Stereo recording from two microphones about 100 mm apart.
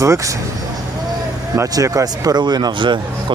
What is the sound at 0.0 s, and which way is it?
Speech, 30° right (ahead or behind).